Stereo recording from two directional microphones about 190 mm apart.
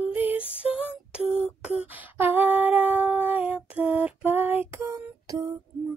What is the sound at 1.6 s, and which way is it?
Humming, 5° right (ahead or behind).